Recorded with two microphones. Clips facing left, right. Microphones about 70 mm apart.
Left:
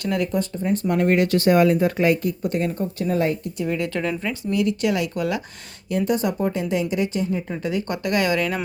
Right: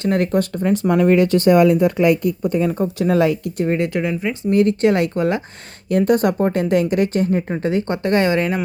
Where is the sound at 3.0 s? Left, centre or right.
Right.